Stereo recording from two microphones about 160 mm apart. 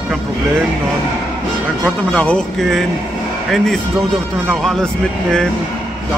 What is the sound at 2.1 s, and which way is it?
A man's voice, 5° left (ahead or behind).